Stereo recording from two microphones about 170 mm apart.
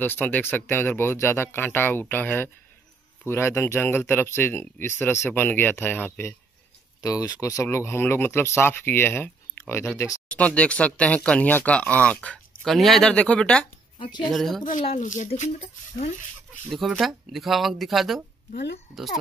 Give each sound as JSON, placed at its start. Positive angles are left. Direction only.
{"t": 0.0, "sound": "speech", "side_deg": 10}
{"t": 13.9, "sound": "speech", "side_deg": 30}
{"t": 14.3, "sound": "speech", "side_deg": 0}
{"t": 14.6, "sound": "speech", "side_deg": 50}
{"t": 16.7, "sound": "speech", "side_deg": 0}